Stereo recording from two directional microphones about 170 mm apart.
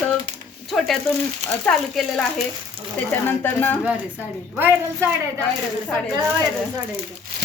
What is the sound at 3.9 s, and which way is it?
Speech, 10° right (ahead or behind).